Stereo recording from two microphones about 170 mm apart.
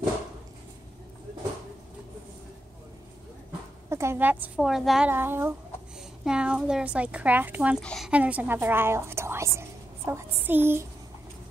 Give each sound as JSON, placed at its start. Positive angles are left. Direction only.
{"t": 3.9, "sound": "speech", "side_deg": -15}
{"t": 7.8, "sound": "a woman's voice", "side_deg": 5}
{"t": 8.1, "sound": "a woman's voice", "side_deg": -10}